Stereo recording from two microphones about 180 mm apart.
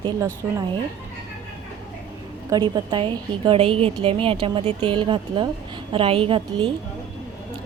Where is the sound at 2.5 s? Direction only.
25° right (ahead or behind).